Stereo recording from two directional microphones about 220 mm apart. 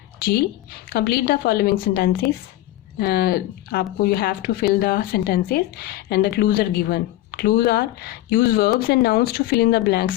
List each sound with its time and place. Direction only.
0.9 s speech: 45° left (ahead or behind)